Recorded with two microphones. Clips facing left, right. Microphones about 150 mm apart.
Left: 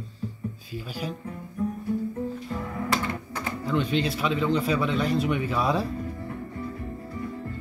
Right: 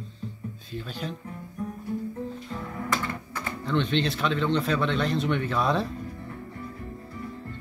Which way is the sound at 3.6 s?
5° left (ahead or behind).